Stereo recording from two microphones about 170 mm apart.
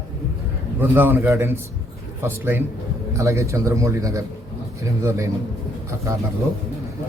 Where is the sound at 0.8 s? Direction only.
10° right (ahead or behind).